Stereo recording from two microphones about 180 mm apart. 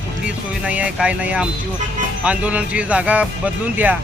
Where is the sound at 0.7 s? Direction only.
5° right (ahead or behind).